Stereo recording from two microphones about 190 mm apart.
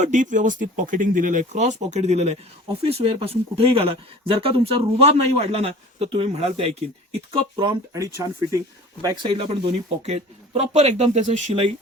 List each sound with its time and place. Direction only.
0.0 s speech: 40° right (ahead or behind); by 9.5 s 25° right (ahead or behind)
10.1 s speech: 35° right (ahead or behind)